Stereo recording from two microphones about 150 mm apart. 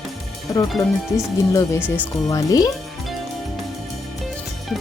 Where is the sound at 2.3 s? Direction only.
25° left (ahead or behind).